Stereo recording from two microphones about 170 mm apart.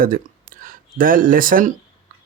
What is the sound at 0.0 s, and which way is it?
Speech, 55° right (ahead or behind).